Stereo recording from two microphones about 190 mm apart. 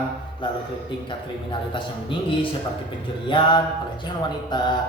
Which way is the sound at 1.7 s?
25° left (ahead or behind).